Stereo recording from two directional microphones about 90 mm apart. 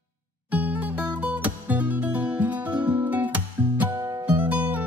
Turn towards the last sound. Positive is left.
turn(degrees=-20)  # may be behind; listen again after turning